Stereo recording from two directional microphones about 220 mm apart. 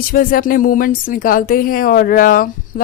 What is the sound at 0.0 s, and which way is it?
Speech, 40° left (ahead or behind).